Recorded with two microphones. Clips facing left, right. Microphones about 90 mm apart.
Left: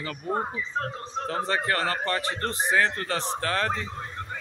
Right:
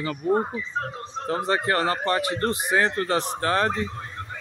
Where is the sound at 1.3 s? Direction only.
20° right (ahead or behind).